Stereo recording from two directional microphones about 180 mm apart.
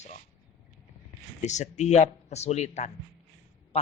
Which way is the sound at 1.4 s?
40° left (ahead or behind).